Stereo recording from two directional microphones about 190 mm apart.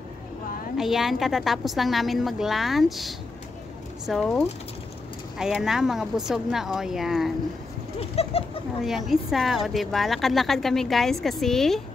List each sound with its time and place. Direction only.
0.7 s a woman's voice: centre (ahead or behind)
8.0 s bird: 30° left (ahead or behind)
8.8 s a woman's voice: centre (ahead or behind)